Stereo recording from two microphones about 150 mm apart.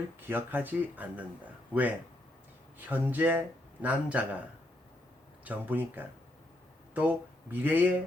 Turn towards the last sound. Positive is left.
turn(degrees=-10)  # may be behind; listen again after turning